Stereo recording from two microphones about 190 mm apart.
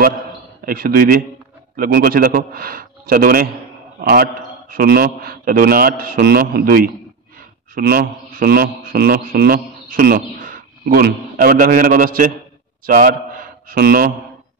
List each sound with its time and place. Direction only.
0.7 s a man's voice: 50° right (ahead or behind)